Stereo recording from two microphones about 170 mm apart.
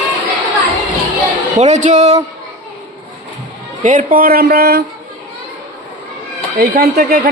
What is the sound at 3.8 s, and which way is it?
Speech, 50° right (ahead or behind).